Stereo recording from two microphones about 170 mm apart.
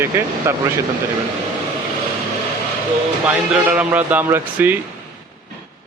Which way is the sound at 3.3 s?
5° right (ahead or behind).